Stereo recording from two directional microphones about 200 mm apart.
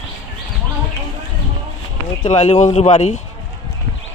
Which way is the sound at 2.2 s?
30° left (ahead or behind).